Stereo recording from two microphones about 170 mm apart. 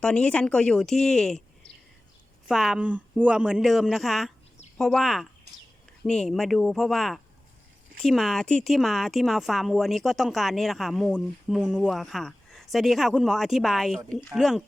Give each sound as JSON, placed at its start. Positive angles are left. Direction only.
{"t": 0.0, "sound": "speech", "side_deg": 5}